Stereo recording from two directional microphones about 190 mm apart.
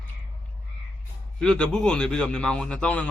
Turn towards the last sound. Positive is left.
turn(degrees=5)  # may be behind; listen again after turning